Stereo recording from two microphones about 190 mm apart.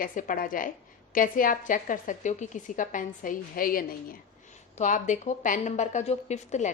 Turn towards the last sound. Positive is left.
turn(degrees=40)  # may be behind; listen again after turning